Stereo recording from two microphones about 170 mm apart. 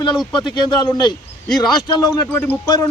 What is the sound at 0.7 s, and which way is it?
Speech, 25° left (ahead or behind).